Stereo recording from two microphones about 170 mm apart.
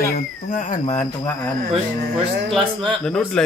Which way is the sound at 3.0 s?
5° left (ahead or behind).